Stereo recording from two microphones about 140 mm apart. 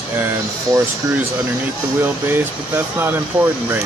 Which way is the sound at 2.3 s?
15° right (ahead or behind).